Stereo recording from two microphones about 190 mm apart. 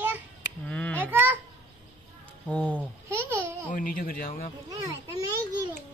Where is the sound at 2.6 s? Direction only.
10° right (ahead or behind).